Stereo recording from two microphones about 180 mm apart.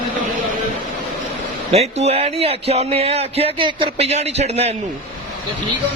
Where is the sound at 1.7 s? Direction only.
35° right (ahead or behind).